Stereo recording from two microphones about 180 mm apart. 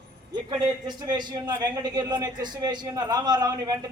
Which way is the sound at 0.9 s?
25° right (ahead or behind).